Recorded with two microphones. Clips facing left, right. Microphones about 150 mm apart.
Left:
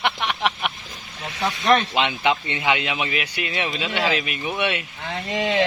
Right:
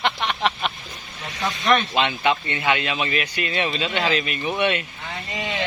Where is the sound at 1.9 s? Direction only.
15° left (ahead or behind).